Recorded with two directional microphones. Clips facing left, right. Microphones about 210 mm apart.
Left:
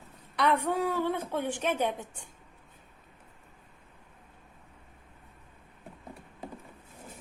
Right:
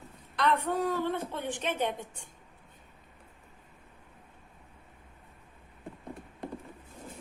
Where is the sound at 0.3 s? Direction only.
10° left (ahead or behind).